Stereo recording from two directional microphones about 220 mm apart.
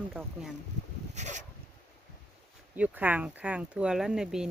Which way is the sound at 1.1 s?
30° right (ahead or behind).